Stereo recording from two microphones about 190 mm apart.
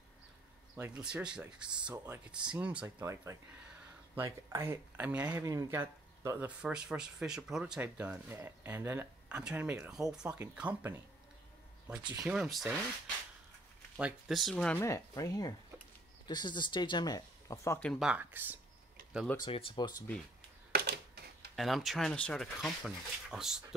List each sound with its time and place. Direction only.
0.7 s speech: 10° right (ahead or behind)
12.1 s speech: 10° right (ahead or behind)
13.9 s speech: 5° right (ahead or behind); by 17.7 s 20° left (ahead or behind)
17.8 s speech: 5° right (ahead or behind)
19.3 s speech: 25° left (ahead or behind)
20.7 s a sound: 55° right (ahead or behind)
21.5 s speech: centre (ahead or behind)